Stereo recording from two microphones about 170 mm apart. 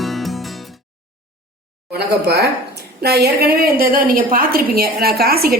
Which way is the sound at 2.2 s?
70° right (ahead or behind).